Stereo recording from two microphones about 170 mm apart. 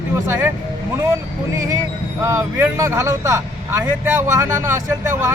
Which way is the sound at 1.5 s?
20° right (ahead or behind).